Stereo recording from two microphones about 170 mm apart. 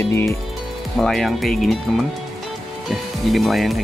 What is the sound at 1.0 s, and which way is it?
Speech, centre (ahead or behind).